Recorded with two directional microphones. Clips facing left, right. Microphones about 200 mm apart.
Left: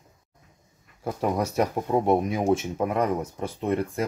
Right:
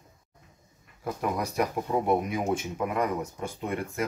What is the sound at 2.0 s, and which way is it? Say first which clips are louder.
Speech: left 5 dB; 25° left (ahead or behind).